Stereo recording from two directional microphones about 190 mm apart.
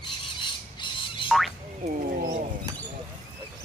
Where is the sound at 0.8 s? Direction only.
25° left (ahead or behind).